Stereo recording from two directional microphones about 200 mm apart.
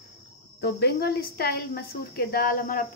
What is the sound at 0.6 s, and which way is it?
Speech, 50° left (ahead or behind).